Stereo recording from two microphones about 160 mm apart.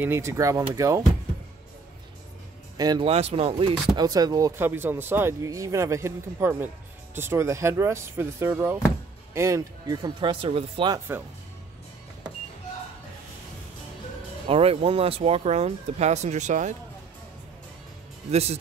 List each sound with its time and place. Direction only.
0.0 s speech: 15° right (ahead or behind)
2.8 s speech: 25° right (ahead or behind)
3.1 s speech: 40° right (ahead or behind)
3.9 s speech: 25° right (ahead or behind)
14.5 s speech: 35° right (ahead or behind)
18.3 s speech: 40° right (ahead or behind)